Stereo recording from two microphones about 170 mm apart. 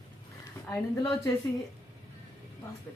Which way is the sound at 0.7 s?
20° left (ahead or behind).